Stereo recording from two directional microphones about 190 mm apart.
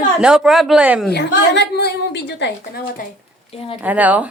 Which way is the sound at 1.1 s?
60° left (ahead or behind).